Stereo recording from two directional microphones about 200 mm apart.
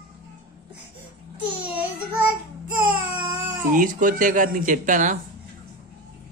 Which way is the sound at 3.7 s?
40° right (ahead or behind).